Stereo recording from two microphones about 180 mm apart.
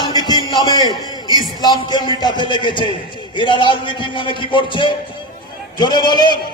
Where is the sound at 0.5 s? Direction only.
20° left (ahead or behind).